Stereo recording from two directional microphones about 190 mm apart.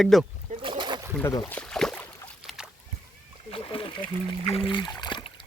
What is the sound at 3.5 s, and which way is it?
Splash, 30° left (ahead or behind).